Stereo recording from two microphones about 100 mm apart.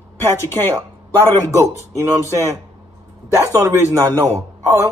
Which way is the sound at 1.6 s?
30° right (ahead or behind).